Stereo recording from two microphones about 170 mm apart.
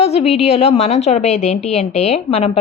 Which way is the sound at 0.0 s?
40° left (ahead or behind).